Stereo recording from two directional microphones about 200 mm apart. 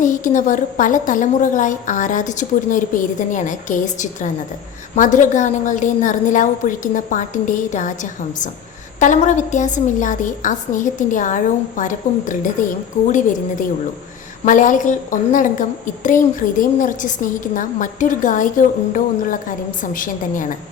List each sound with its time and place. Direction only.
0.0 s a woman's voice: 40° left (ahead or behind)